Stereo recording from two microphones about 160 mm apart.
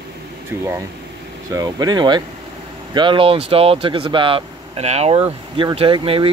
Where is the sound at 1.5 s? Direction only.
25° right (ahead or behind).